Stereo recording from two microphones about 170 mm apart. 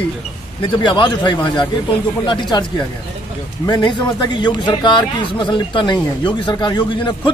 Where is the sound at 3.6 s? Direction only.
25° left (ahead or behind).